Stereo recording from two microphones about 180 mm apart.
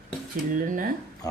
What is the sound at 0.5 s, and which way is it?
Speech, 50° right (ahead or behind).